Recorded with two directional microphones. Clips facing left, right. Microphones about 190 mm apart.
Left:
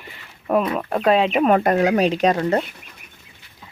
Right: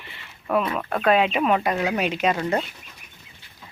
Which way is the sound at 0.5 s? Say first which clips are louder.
Left 3 dB; 30° left (ahead or behind).